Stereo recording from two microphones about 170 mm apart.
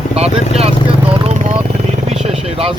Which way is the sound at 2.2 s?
35° right (ahead or behind).